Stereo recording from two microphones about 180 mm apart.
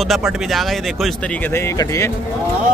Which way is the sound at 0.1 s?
Centre (ahead or behind).